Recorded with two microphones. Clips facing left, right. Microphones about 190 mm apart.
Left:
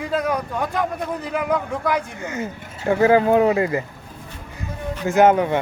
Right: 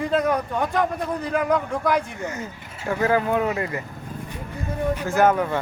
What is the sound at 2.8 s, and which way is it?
Speech, 25° left (ahead or behind).